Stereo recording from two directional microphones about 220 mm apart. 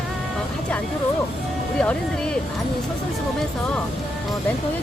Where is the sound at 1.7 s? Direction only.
5° left (ahead or behind).